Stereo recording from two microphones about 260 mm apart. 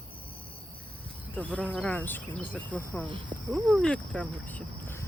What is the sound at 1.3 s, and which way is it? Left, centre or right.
Speech, centre.